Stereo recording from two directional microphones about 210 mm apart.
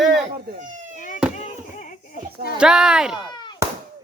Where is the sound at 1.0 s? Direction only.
40° left (ahead or behind).